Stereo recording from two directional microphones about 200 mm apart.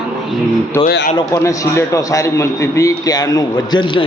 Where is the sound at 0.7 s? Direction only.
10° left (ahead or behind).